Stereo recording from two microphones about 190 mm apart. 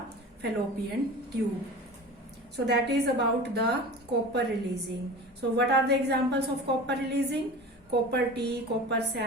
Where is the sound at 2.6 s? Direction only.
60° right (ahead or behind).